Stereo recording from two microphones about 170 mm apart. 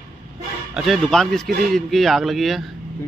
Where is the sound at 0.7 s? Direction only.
Centre (ahead or behind).